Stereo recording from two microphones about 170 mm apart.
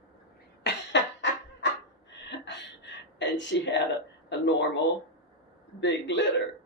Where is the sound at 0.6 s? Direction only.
90° left.